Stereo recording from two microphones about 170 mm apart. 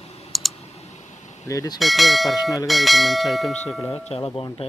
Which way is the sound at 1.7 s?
Centre (ahead or behind).